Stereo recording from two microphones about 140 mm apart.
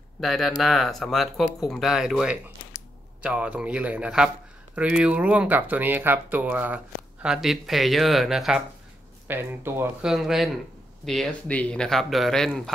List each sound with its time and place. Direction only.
0.2 s speech: centre (ahead or behind)
9.3 s speech: 15° right (ahead or behind)
10.0 s speech: 5° right (ahead or behind)